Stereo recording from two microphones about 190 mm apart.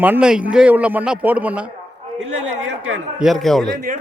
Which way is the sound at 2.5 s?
90° right.